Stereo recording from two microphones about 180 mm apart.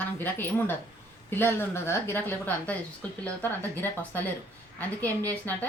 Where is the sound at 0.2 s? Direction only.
10° left (ahead or behind).